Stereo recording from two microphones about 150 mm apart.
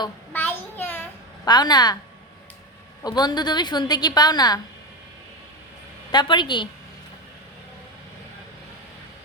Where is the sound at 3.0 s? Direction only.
30° left (ahead or behind).